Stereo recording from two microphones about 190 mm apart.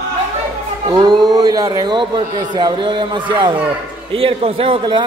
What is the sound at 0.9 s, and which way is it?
A man's voice, 20° right (ahead or behind).